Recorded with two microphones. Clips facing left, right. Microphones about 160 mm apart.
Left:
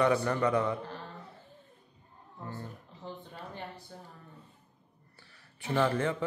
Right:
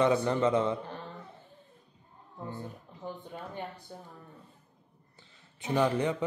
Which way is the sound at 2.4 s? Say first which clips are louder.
Right 2 dB; 15° right (ahead or behind).